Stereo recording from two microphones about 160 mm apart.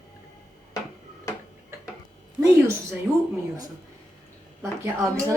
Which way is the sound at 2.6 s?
15° right (ahead or behind).